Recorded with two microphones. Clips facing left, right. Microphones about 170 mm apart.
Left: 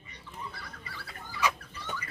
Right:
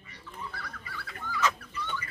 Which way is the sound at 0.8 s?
30° left (ahead or behind).